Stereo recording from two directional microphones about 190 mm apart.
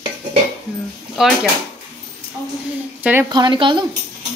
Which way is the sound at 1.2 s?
Centre (ahead or behind).